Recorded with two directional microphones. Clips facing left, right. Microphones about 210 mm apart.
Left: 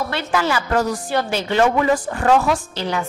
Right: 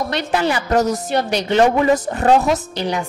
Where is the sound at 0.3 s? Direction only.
20° right (ahead or behind).